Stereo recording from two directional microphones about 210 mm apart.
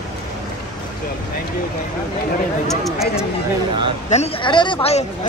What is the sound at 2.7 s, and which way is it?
Speech, centre (ahead or behind).